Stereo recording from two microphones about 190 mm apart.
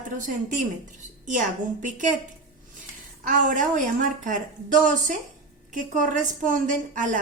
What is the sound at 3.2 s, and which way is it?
A woman's voice, 45° right (ahead or behind).